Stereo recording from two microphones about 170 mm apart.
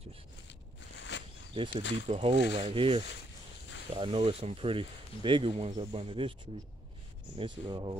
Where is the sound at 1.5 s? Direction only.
30° right (ahead or behind).